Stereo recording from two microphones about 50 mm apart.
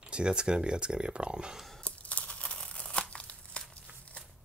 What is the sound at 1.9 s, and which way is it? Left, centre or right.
Crumpling, left.